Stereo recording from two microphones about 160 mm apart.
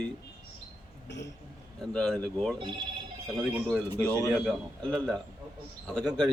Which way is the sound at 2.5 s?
30° right (ahead or behind).